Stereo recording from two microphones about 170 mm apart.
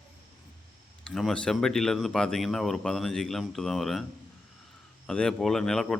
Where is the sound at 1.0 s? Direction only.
5° left (ahead or behind).